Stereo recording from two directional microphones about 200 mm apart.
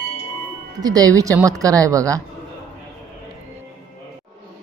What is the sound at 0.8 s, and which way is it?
Speech, 20° right (ahead or behind).